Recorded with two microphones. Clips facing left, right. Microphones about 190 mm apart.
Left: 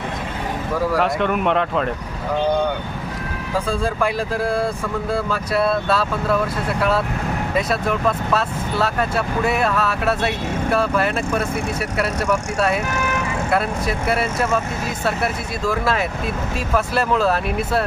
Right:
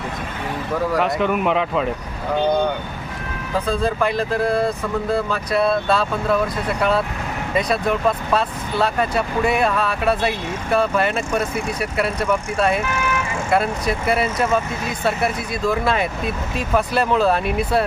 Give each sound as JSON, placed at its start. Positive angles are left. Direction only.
{"t": 0.9, "sound": "speech", "side_deg": 0}
{"t": 3.7, "sound": "speech", "side_deg": 10}
{"t": 12.8, "sound": "vehicle", "side_deg": 40}
{"t": 13.5, "sound": "speech", "side_deg": 0}